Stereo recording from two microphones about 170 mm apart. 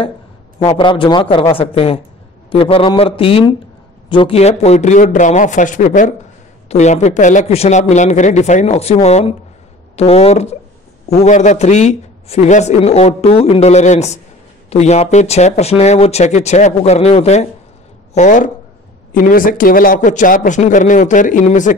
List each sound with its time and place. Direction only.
0.7 s a man's voice: 30° left (ahead or behind); by 21.7 s 50° left (ahead or behind)